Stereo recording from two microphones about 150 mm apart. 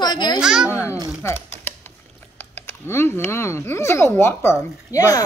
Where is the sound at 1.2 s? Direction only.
15° left (ahead or behind).